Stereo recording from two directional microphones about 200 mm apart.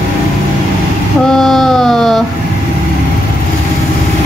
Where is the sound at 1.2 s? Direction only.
Centre (ahead or behind).